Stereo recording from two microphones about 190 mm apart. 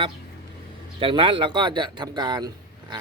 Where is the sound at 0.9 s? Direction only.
25° right (ahead or behind).